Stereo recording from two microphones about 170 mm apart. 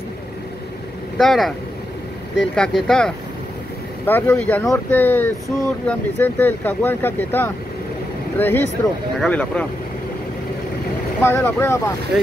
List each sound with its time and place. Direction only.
1.1 s speech: centre (ahead or behind)
2.5 s speech: 5° left (ahead or behind)
11.2 s speech: 15° left (ahead or behind)